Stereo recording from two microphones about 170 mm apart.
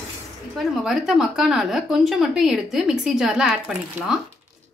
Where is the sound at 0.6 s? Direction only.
Centre (ahead or behind).